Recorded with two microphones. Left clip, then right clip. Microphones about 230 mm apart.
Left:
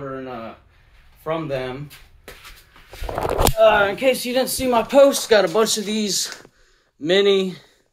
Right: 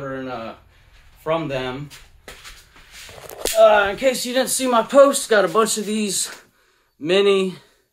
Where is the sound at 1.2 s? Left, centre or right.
Centre.